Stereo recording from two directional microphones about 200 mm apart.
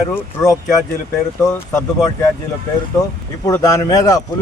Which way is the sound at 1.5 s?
15° left (ahead or behind).